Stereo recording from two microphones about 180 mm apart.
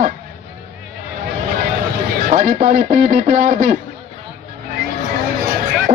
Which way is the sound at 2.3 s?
45° right (ahead or behind).